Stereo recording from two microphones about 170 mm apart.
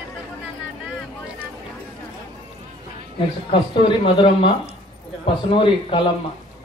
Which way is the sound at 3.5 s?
30° left (ahead or behind).